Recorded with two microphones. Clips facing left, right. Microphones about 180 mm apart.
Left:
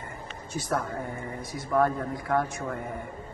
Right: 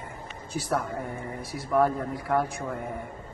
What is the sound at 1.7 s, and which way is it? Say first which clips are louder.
Speech: right 1 dB; 10° right (ahead or behind).